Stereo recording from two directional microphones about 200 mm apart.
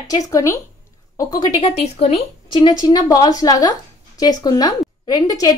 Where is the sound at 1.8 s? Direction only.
30° left (ahead or behind).